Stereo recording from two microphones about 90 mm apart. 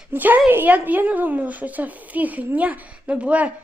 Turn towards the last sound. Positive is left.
turn(degrees=-15)  # may be behind; listen again after turning